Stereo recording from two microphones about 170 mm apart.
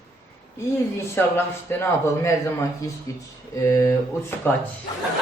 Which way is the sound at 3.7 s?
15° left (ahead or behind).